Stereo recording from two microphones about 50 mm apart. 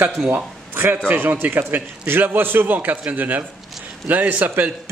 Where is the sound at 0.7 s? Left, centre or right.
Right.